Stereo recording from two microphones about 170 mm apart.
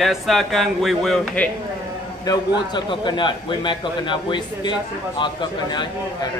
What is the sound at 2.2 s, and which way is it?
A man's voice, 25° left (ahead or behind).